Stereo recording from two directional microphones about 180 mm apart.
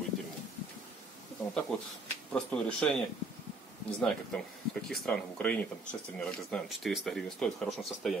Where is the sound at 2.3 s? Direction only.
5° left (ahead or behind).